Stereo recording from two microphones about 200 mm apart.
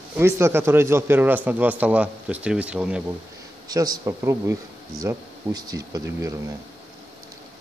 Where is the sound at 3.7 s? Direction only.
20° right (ahead or behind).